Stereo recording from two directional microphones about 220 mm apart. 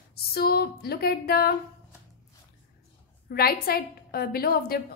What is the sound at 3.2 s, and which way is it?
A woman's voice, 45° left (ahead or behind).